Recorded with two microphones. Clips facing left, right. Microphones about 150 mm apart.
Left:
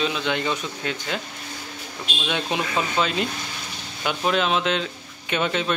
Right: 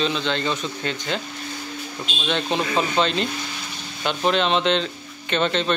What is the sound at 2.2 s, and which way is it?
Speech, 10° left (ahead or behind).